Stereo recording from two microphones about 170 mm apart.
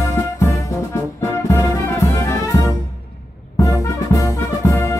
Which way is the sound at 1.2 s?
20° left (ahead or behind).